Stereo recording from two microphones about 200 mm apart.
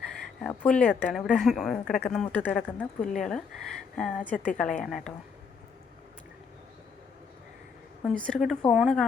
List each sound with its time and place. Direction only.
0.4 s a woman's voice: 5° left (ahead or behind)
8.0 s speech: centre (ahead or behind)